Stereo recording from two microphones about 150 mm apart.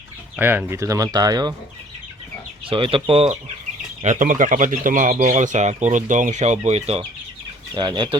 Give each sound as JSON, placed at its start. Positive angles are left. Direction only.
{"t": 0.3, "sound": "speech", "side_deg": -15}
{"t": 2.6, "sound": "speech", "side_deg": -35}
{"t": 4.0, "sound": "speech", "side_deg": -55}
{"t": 7.7, "sound": "speech", "side_deg": -30}